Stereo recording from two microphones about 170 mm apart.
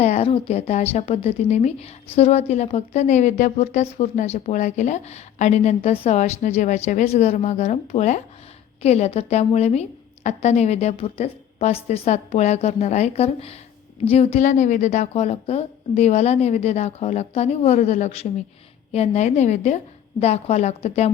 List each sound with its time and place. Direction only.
0.0 s a woman's voice: 40° left (ahead or behind)